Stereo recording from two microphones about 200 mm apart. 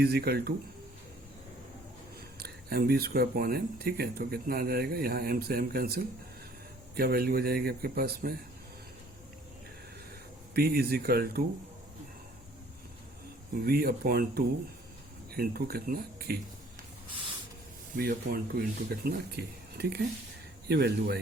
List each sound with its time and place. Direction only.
0.0 s speech: 55° right (ahead or behind)
2.4 s speech: 50° right (ahead or behind)
10.5 s speech: 50° right (ahead or behind)
13.7 s speech: 50° right (ahead or behind)
17.9 s speech: 45° right (ahead or behind)